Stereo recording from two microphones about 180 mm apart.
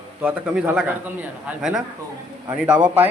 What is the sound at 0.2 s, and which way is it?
A man's voice, 5° right (ahead or behind).